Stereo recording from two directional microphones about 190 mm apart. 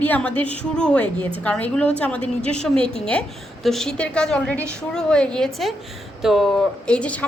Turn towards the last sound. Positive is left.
turn(degrees=5)  # may be behind; listen again after turning